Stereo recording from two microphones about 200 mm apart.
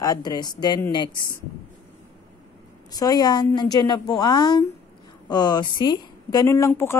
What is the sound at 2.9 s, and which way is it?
A woman's voice, 20° left (ahead or behind).